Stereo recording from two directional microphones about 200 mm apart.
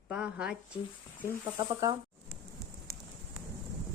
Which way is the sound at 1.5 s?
20° right (ahead or behind).